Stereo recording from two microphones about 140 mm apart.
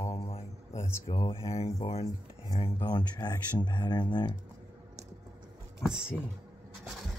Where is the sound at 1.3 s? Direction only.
45° left (ahead or behind).